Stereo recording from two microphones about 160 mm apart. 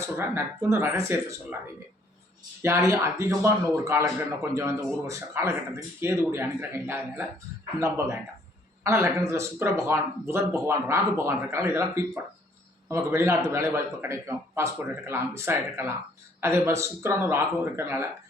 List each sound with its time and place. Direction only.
0.2 s speech: 15° right (ahead or behind)
2.6 s speech: 15° right (ahead or behind)